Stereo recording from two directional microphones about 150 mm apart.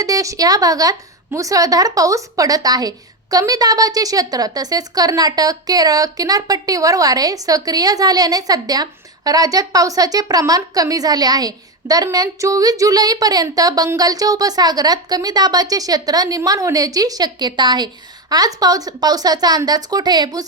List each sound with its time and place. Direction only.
0.0 s speech: 20° right (ahead or behind)